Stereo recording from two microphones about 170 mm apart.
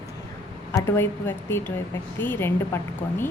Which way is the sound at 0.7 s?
15° left (ahead or behind).